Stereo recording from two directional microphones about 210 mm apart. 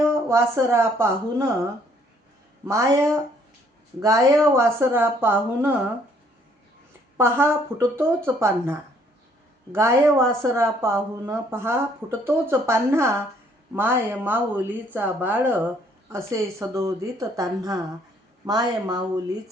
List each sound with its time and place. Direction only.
0.3 s a woman's voice: 15° right (ahead or behind)
2.6 s a woman's voice: 15° right (ahead or behind)
7.2 s a woman's voice: 10° right (ahead or behind)